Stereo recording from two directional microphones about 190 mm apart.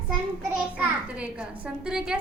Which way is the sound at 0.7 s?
5° right (ahead or behind).